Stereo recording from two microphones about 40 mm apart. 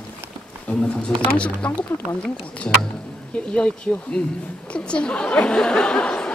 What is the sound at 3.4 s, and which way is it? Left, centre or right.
Speech, left.